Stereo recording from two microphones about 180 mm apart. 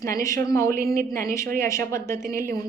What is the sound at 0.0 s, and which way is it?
Speech, 15° left (ahead or behind).